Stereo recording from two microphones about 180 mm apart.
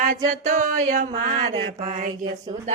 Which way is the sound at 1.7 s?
40° right (ahead or behind).